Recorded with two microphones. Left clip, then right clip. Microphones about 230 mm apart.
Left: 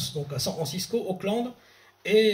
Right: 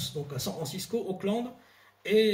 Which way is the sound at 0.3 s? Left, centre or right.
Centre.